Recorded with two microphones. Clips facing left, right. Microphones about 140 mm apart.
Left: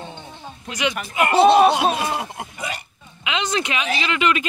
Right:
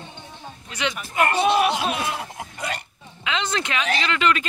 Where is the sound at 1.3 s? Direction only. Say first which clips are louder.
Left 9 dB; 80° left.